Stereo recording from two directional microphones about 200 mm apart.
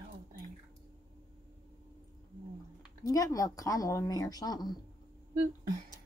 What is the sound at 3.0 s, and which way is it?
Speech, 20° left (ahead or behind).